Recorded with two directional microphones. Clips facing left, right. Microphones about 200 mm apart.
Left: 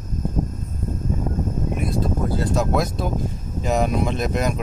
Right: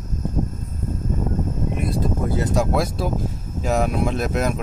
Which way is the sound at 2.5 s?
5° right (ahead or behind).